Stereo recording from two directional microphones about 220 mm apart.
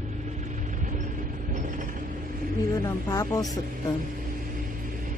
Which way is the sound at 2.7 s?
15° left (ahead or behind).